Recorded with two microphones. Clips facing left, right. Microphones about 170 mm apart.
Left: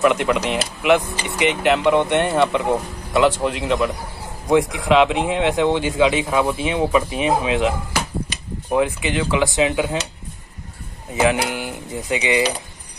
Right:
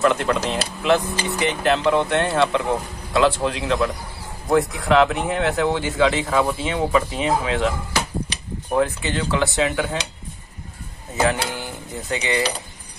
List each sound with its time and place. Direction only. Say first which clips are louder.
0.0 s speech: left 2 dB; 15° left (ahead or behind)
8.7 s speech: left 2 dB; 15° left (ahead or behind)
11.1 s speech: left 3 dB; 15° left (ahead or behind)